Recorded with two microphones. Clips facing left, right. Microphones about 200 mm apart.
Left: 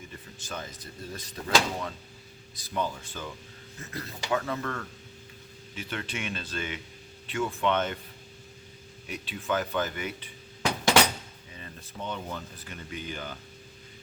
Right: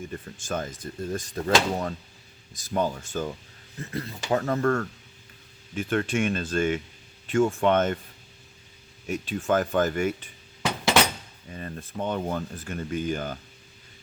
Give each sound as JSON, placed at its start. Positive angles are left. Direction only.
{"t": 0.1, "sound": "speech", "side_deg": -50}
{"t": 3.9, "sound": "speech", "side_deg": -30}
{"t": 9.0, "sound": "speech", "side_deg": -45}
{"t": 11.5, "sound": "speech", "side_deg": -50}